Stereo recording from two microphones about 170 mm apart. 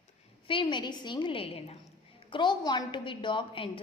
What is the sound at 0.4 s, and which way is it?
A woman's voice, 30° left (ahead or behind).